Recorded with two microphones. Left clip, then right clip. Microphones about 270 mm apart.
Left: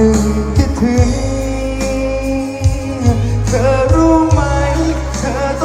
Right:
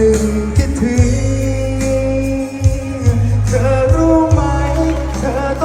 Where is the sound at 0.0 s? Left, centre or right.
Left.